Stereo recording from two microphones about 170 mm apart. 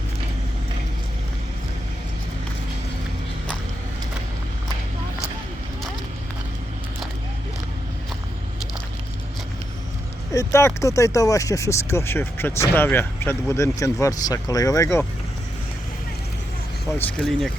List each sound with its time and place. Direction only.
10.3 s speech: 15° left (ahead or behind)
17.0 s speech: centre (ahead or behind)